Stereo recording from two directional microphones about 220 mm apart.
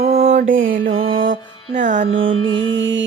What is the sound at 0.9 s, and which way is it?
Mantra, 25° right (ahead or behind).